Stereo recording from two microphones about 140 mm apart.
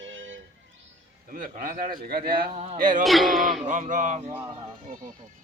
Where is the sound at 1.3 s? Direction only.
75° right (ahead or behind); by 2.1 s 90° right.